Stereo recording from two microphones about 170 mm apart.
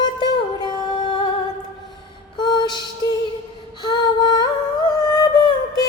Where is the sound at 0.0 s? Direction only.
25° left (ahead or behind).